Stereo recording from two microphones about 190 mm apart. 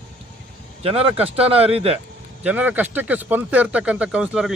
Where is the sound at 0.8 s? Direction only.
30° right (ahead or behind).